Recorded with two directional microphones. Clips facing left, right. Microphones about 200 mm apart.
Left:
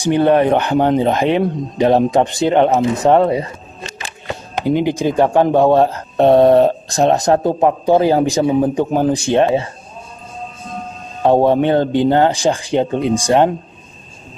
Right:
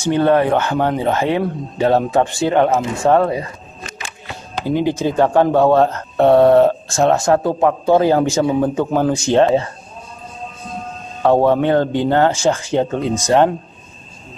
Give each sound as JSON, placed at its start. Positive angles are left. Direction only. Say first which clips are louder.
{"t": 0.0, "sound": "speech", "louder": "left 2 dB", "side_deg": 15}
{"t": 4.6, "sound": "speech", "louder": "left 2 dB", "side_deg": 15}
{"t": 11.2, "sound": "speech", "louder": "left 1 dB", "side_deg": 15}